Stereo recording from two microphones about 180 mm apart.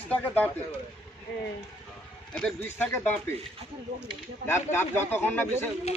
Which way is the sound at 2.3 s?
10° left (ahead or behind).